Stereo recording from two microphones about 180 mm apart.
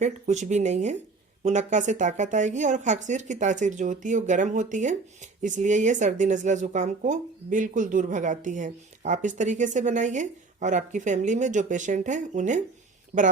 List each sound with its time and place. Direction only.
0.0 s speech: 40° right (ahead or behind)